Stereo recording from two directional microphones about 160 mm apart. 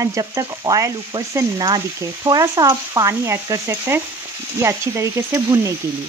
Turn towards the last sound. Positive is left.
turn(degrees=-20)  # may be behind; listen again after turning